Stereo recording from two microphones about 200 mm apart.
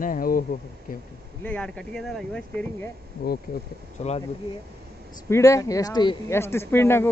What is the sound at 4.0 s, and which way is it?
Speech, 35° left (ahead or behind).